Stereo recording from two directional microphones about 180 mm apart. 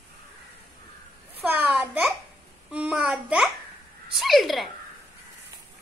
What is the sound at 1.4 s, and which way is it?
A child's voice, 5° right (ahead or behind).